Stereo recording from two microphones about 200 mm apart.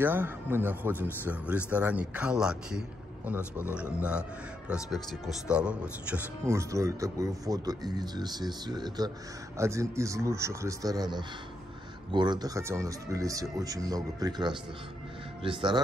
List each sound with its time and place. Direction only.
0.0 s a man's voice: 10° right (ahead or behind)